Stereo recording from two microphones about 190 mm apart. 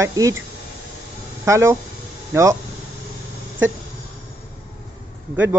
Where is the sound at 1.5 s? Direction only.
15° right (ahead or behind).